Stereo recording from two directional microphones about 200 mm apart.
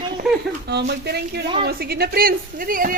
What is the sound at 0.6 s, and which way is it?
A woman's voice, 55° right (ahead or behind).